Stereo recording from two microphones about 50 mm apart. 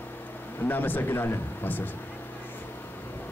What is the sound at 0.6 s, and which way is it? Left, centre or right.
Speech, left.